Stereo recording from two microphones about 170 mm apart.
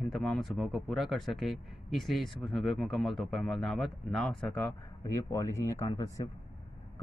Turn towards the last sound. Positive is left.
turn(degrees=20)  # may be behind; listen again after turning